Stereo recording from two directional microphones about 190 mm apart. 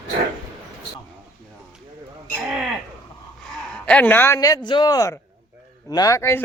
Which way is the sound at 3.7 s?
5° left (ahead or behind).